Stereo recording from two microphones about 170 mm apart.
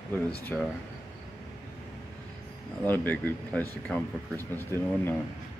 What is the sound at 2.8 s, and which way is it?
Speech, 10° left (ahead or behind).